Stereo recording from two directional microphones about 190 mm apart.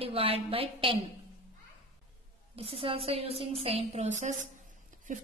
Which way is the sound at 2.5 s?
30° right (ahead or behind).